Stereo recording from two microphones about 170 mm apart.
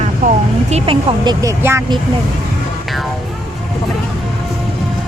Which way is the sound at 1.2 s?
20° right (ahead or behind).